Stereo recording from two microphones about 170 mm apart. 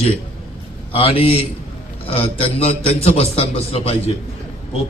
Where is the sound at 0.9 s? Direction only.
35° left (ahead or behind).